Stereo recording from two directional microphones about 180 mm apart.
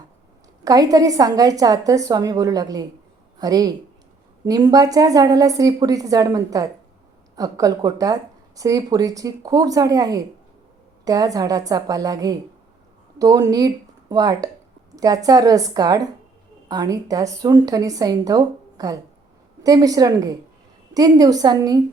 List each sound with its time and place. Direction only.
0.6 s speech: 20° right (ahead or behind)